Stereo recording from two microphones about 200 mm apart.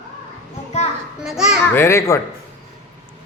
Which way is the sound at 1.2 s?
5° right (ahead or behind).